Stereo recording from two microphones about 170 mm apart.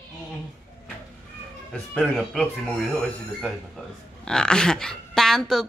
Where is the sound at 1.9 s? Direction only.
Centre (ahead or behind).